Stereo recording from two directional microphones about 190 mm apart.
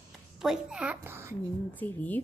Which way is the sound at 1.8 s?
10° left (ahead or behind).